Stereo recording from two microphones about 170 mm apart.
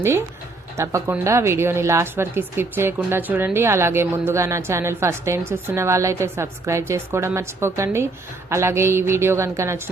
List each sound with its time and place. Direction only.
0.8 s speech: 15° right (ahead or behind)